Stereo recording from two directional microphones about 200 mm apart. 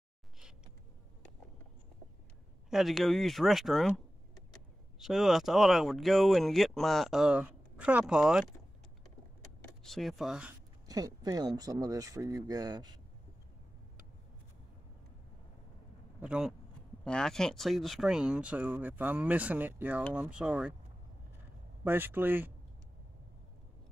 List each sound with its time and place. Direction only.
2.7 s speech: centre (ahead or behind)
9.8 s speech: centre (ahead or behind)
10.9 s speech: 20° right (ahead or behind)
16.2 s speech: 5° right (ahead or behind)
21.8 s speech: 10° right (ahead or behind)